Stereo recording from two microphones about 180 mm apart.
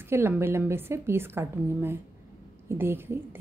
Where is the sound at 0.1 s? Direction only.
15° right (ahead or behind).